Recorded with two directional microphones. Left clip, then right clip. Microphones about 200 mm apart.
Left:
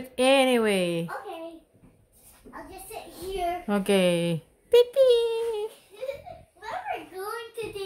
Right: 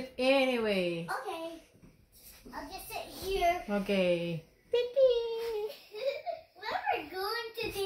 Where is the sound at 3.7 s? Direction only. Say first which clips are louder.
Left 6 dB; 55° left (ahead or behind).